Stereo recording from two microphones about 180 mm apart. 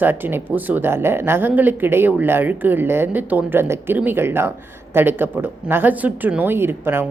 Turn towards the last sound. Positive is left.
turn(degrees=-10)  # may be behind; listen again after turning